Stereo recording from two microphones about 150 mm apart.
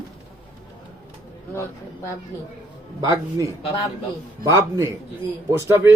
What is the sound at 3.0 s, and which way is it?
A man's voice, 30° right (ahead or behind).